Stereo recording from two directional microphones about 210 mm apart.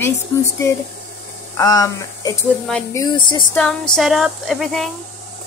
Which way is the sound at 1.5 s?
15° left (ahead or behind).